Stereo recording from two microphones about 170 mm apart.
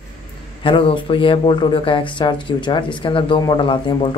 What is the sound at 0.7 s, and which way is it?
Speech, 30° left (ahead or behind).